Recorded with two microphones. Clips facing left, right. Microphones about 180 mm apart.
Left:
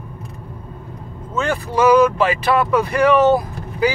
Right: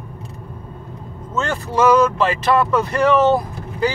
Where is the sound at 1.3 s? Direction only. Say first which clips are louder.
Left 2 dB; 15° left (ahead or behind).